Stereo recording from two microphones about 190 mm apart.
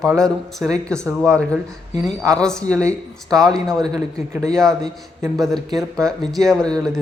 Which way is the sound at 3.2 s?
Centre (ahead or behind).